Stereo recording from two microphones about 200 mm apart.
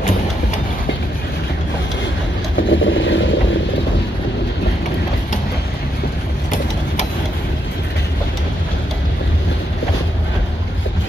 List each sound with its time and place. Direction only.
2.7 s vehicle: 70° left (ahead or behind)